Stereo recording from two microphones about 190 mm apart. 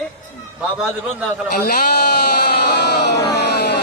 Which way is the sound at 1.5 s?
55° left (ahead or behind).